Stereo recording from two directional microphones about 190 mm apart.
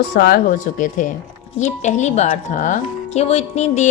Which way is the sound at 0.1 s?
55° left (ahead or behind).